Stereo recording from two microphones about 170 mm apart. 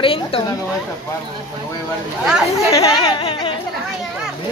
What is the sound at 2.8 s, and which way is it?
Speech, 25° left (ahead or behind).